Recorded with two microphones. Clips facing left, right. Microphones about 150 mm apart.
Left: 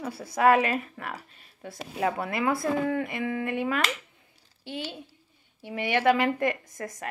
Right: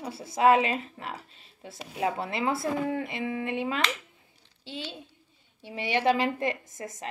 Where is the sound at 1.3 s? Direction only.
55° left (ahead or behind).